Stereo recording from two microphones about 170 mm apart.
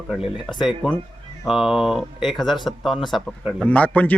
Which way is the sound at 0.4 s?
Centre (ahead or behind).